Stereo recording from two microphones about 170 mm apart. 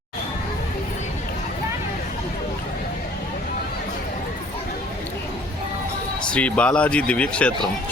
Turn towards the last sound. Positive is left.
turn(degrees=5)  # may be behind; listen again after turning